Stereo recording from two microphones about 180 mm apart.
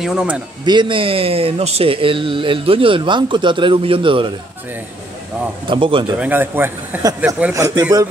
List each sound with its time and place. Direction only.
0.0 s speech: 5° right (ahead or behind)
0.7 s speech: 25° right (ahead or behind)
5.7 s speech: 30° right (ahead or behind)
6.1 s a man's voice: 10° right (ahead or behind)